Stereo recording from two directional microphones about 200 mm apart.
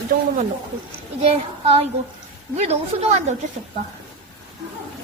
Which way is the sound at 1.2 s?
30° right (ahead or behind).